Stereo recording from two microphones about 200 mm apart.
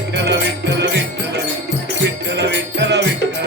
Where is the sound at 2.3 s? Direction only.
60° right (ahead or behind).